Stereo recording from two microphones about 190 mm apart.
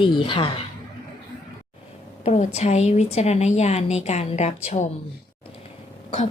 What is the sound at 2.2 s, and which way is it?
A woman's voice, 35° left (ahead or behind).